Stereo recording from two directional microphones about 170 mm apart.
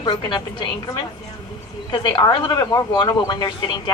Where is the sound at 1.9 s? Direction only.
25° left (ahead or behind).